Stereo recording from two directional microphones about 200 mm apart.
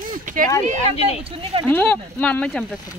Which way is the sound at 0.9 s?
30° left (ahead or behind).